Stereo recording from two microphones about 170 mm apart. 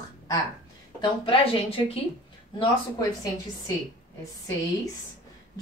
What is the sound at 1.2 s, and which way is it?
Speech, 30° left (ahead or behind).